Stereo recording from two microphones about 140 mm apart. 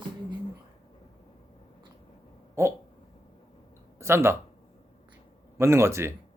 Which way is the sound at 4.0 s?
20° right (ahead or behind).